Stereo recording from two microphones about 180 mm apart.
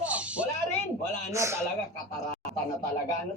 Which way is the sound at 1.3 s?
15° right (ahead or behind).